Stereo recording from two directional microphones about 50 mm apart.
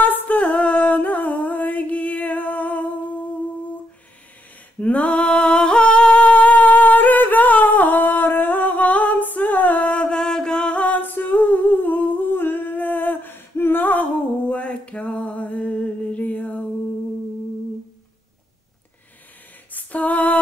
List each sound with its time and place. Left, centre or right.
0.0 s music: left
4.7 s singing: left
10.8 s humming: left
14.5 s a sound: left
19.7 s female singing: left